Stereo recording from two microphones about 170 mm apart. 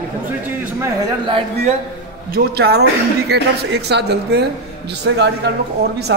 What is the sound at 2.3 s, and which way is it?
A man's voice, 65° right (ahead or behind).